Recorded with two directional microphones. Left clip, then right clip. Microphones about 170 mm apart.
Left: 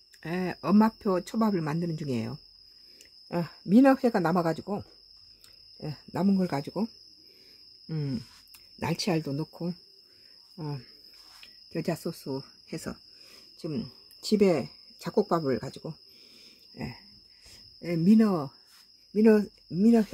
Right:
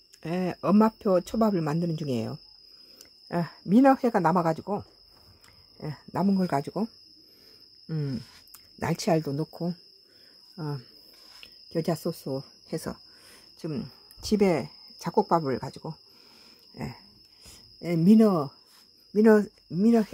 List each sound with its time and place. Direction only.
0.2 s speech: 10° right (ahead or behind)
10.5 s cricket: 10° right (ahead or behind)
11.7 s speech: 15° right (ahead or behind)
16.7 s a sound: centre (ahead or behind)
17.7 s speech: 20° right (ahead or behind)